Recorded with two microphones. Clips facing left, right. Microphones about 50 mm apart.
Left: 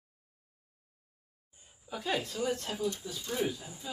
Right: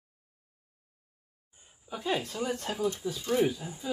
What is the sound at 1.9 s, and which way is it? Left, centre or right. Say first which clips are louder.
Speech: right 2 dB; centre.